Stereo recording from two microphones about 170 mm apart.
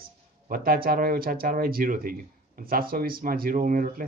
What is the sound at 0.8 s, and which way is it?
A man's voice, 60° right (ahead or behind).